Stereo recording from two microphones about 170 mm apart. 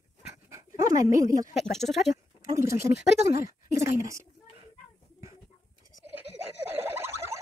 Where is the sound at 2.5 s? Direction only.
15° right (ahead or behind).